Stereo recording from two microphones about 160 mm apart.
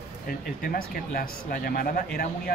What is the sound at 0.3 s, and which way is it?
Speech, 65° left (ahead or behind).